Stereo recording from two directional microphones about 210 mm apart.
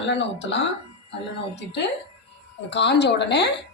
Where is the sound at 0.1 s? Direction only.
60° left (ahead or behind).